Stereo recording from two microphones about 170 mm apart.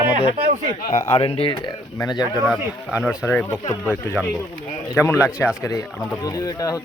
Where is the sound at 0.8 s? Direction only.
45° left (ahead or behind); by 2.4 s 25° left (ahead or behind).